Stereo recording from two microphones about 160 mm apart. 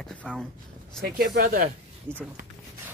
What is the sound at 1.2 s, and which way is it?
Speech, 65° right (ahead or behind).